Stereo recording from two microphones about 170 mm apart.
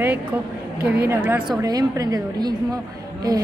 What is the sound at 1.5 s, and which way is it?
A woman's voice, 25° right (ahead or behind).